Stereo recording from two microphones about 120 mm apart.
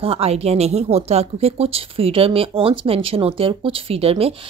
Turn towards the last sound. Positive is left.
turn(degrees=-55)  # may be behind; listen again after turning